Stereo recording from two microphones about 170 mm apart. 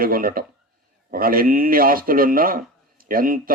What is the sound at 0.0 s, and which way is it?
A man's voice, 55° right (ahead or behind).